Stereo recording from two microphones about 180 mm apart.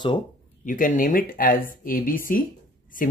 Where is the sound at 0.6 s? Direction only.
50° left (ahead or behind).